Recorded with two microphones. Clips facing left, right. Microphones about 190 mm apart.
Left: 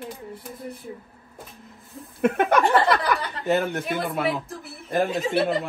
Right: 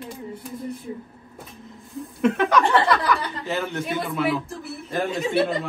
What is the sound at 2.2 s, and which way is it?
Speech, 55° left (ahead or behind).